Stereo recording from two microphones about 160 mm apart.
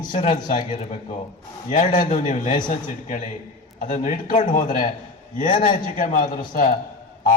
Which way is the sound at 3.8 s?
55° left (ahead or behind).